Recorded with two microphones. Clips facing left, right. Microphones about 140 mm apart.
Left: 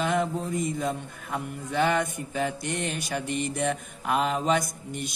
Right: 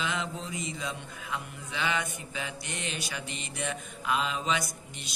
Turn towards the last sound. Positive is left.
turn(degrees=55)  # may be behind; listen again after turning